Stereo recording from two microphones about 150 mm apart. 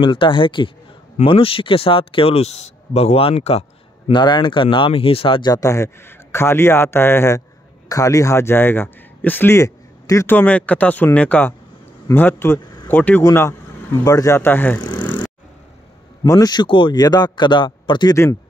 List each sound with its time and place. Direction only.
0.0 s speech: 35° left (ahead or behind)
4.1 s speech: 30° left (ahead or behind); by 14.8 s 10° left (ahead or behind)
14.8 s vehicle: 30° left (ahead or behind)
16.3 s speech: 25° left (ahead or behind)